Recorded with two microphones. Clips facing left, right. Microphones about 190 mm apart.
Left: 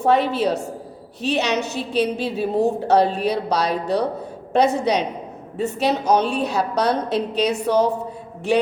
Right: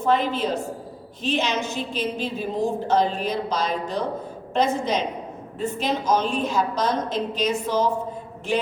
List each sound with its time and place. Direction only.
0.0 s a woman's voice: 70° left (ahead or behind)